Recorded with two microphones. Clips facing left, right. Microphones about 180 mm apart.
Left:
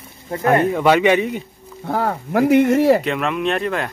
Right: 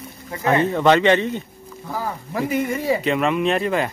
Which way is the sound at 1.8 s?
65° left (ahead or behind).